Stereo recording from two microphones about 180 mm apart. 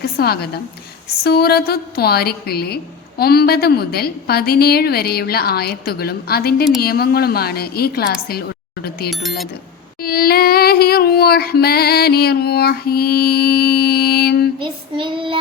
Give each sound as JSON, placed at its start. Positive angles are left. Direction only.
{"t": 0.0, "sound": "a woman's voice", "side_deg": 60}
{"t": 14.6, "sound": "child singing", "side_deg": -30}